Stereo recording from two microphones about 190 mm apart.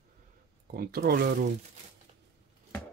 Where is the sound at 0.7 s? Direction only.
55° right (ahead or behind).